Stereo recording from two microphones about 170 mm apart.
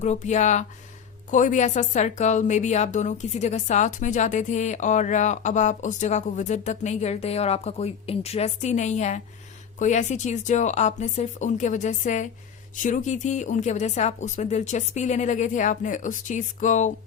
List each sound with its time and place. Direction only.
0.0 s a woman's voice: 45° left (ahead or behind)